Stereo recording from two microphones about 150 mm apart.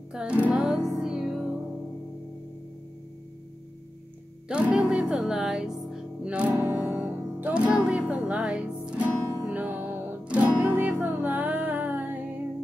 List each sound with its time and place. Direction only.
0.1 s music: 5° right (ahead or behind)
4.5 s speech: 5° right (ahead or behind)
6.5 s music: 10° right (ahead or behind)